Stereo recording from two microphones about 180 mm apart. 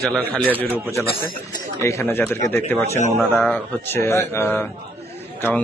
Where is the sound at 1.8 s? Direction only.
10° left (ahead or behind).